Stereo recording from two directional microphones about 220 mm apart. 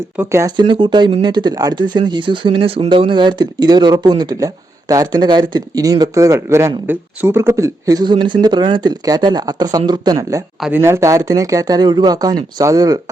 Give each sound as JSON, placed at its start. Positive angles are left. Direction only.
{"t": 0.2, "sound": "speech", "side_deg": -10}